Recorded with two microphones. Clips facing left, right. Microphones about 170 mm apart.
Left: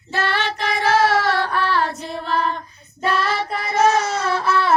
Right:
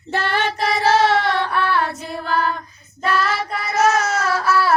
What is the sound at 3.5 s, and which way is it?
Child singing, 30° left (ahead or behind).